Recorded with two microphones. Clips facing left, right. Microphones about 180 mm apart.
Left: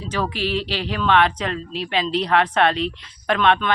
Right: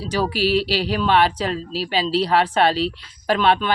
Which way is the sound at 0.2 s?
35° right (ahead or behind).